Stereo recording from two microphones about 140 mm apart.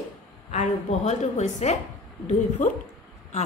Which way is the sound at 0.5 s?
55° left (ahead or behind).